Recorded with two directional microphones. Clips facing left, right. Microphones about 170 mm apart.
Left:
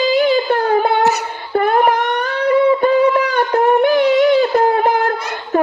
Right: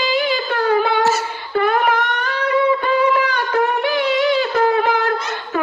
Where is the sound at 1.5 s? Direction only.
45° left (ahead or behind).